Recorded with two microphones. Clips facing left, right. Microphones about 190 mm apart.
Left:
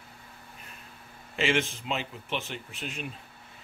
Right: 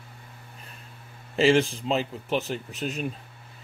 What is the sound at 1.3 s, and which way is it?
Speech, 35° right (ahead or behind).